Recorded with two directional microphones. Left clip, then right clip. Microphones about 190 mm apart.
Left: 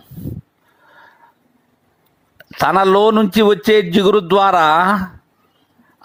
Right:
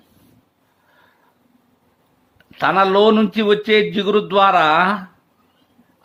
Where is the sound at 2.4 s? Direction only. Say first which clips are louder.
Left 2 dB; 40° left (ahead or behind).